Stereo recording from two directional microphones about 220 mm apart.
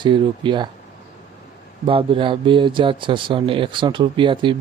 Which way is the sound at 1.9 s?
25° right (ahead or behind).